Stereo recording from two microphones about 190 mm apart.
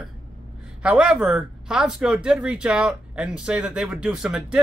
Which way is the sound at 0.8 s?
5° right (ahead or behind).